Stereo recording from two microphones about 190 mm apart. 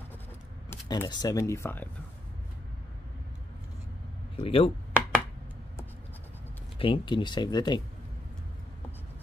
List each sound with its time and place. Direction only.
0.7 s speech: 20° left (ahead or behind)
4.4 s speech: 30° left (ahead or behind)
6.8 s speech: 25° left (ahead or behind)